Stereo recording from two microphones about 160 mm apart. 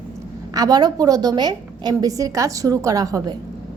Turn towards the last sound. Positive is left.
turn(degrees=-20)  # may be behind; listen again after turning